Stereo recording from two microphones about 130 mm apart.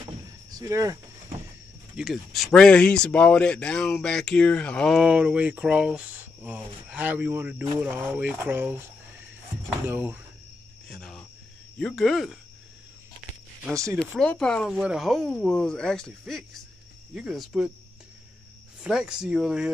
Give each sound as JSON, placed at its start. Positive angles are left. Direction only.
{"t": 0.5, "sound": "speech", "side_deg": -25}
{"t": 2.0, "sound": "speech", "side_deg": 0}
{"t": 5.0, "sound": "speech", "side_deg": -10}
{"t": 9.8, "sound": "speech", "side_deg": -15}
{"t": 10.9, "sound": "cricket", "side_deg": 5}
{"t": 11.8, "sound": "speech", "side_deg": 0}
{"t": 13.9, "sound": "speech", "side_deg": 5}
{"t": 14.7, "sound": "speech", "side_deg": -5}
{"t": 18.8, "sound": "speech", "side_deg": -5}